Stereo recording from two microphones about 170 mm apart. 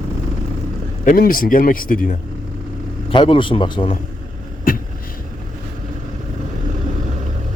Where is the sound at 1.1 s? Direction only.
55° left (ahead or behind).